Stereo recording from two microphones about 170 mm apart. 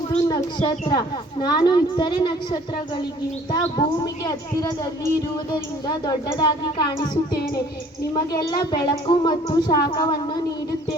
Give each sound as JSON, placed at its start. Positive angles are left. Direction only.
{"t": 0.3, "sound": "a woman's voice", "side_deg": 25}
{"t": 8.1, "sound": "a woman's voice", "side_deg": 25}